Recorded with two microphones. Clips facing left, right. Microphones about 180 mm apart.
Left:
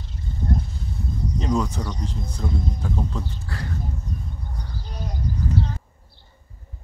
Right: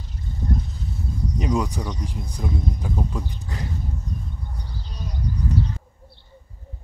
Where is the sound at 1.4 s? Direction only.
15° right (ahead or behind).